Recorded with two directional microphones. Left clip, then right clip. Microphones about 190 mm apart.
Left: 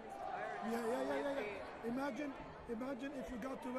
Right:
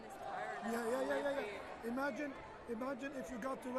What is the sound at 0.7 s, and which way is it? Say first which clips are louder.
Speech: right 2 dB; centre (ahead or behind).